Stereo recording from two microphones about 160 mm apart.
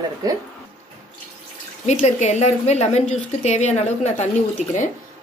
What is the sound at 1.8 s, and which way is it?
A woman's voice, 45° left (ahead or behind).